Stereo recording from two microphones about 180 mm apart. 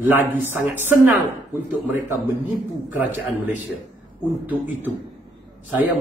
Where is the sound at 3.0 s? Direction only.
10° right (ahead or behind).